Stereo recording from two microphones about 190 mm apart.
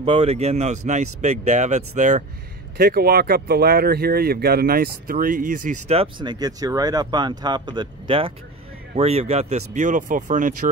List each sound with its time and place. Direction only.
0.0 s speech: 35° right (ahead or behind)
2.8 s speech: 50° right (ahead or behind)